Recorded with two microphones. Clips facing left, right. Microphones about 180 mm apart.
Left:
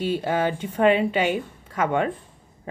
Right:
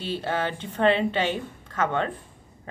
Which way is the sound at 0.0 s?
10° left (ahead or behind).